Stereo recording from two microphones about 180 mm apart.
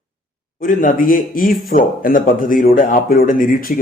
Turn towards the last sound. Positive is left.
turn(degrees=50)  # may be behind; listen again after turning